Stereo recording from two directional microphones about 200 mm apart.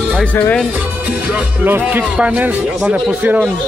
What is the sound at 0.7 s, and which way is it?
Speech, 5° right (ahead or behind).